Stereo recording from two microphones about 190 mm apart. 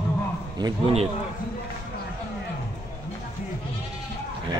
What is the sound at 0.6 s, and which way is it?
Speech, 20° right (ahead or behind).